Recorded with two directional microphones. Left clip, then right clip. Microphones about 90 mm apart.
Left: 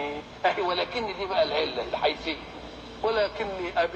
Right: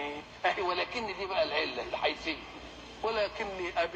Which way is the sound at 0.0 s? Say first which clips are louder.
Left 5 dB; 25° right (ahead or behind).